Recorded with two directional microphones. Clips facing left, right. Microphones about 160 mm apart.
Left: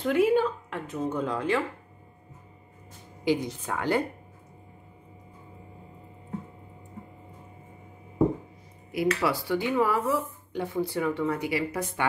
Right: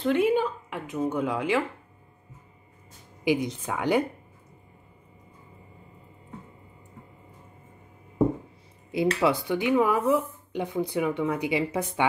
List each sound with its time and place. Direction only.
0.0 s a sound: 5° left (ahead or behind)
3.3 s speech: 15° right (ahead or behind)
8.9 s speech: 25° right (ahead or behind)